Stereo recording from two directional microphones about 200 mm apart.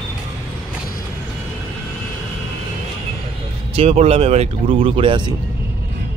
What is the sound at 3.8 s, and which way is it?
Speech, 30° right (ahead or behind).